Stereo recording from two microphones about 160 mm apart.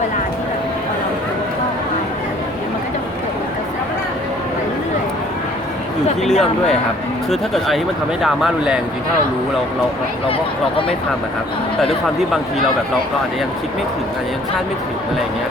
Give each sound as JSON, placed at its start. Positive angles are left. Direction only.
{"t": 6.2, "sound": "speech", "side_deg": 0}
{"t": 10.2, "sound": "speech", "side_deg": 35}
{"t": 12.3, "sound": "speech", "side_deg": 0}